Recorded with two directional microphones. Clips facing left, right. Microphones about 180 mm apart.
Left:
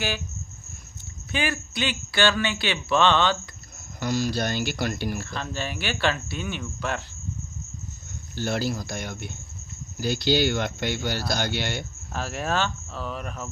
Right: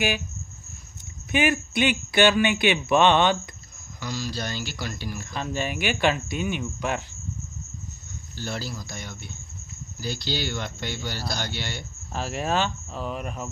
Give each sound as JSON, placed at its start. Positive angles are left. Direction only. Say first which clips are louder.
{"t": 1.3, "sound": "speech", "louder": "right 5 dB", "side_deg": -20}
{"t": 4.0, "sound": "speech", "louder": "left 6 dB", "side_deg": 55}
{"t": 5.2, "sound": "speech", "louder": "right 2 dB", "side_deg": -10}
{"t": 8.4, "sound": "speech", "louder": "left 6 dB", "side_deg": 60}
{"t": 12.1, "sound": "speech", "louder": "right 1 dB", "side_deg": -10}